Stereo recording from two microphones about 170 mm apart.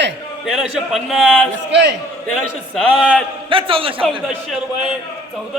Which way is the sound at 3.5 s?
30° right (ahead or behind).